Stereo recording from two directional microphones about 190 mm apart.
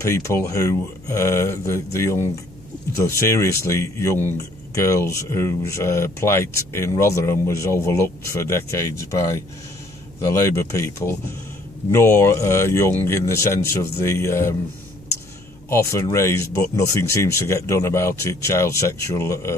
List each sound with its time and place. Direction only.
0.0 s speech: 15° left (ahead or behind)
15.7 s speech: 15° left (ahead or behind)